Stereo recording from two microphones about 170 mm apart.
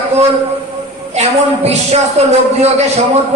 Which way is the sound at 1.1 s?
40° right (ahead or behind).